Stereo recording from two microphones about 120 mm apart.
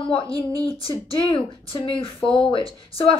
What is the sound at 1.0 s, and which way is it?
A woman's voice, 50° left (ahead or behind).